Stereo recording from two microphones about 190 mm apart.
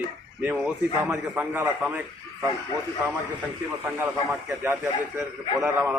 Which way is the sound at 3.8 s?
10° right (ahead or behind).